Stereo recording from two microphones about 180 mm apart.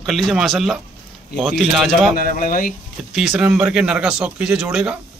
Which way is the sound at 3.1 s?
5° right (ahead or behind).